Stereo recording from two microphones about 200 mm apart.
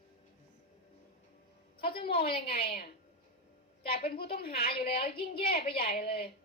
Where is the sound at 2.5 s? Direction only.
50° left (ahead or behind).